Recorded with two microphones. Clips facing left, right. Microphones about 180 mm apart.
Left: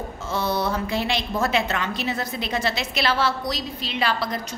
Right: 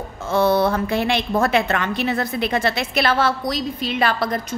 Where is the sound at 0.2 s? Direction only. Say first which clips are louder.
Right 8 dB; 55° right (ahead or behind).